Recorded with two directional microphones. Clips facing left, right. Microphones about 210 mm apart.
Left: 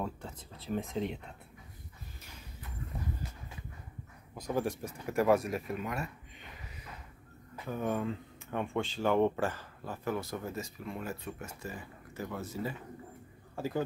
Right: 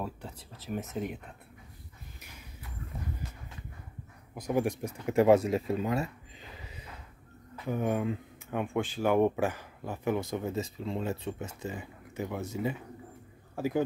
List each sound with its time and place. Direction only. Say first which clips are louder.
0.9 s speech: even; 5° right (ahead or behind)
4.4 s speech: right 4 dB; 15° right (ahead or behind)
7.6 s a man's voice: right 3 dB; 15° right (ahead or behind)